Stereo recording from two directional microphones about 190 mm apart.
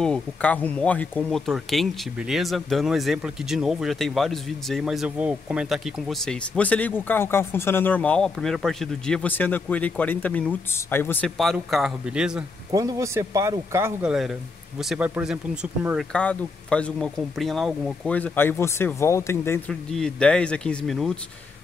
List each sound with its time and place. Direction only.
0.0 s speech: 5° left (ahead or behind)
12.7 s speech: 15° right (ahead or behind)
14.8 s speech: centre (ahead or behind)
16.1 s speech: 5° left (ahead or behind)
19.7 s speech: 5° left (ahead or behind)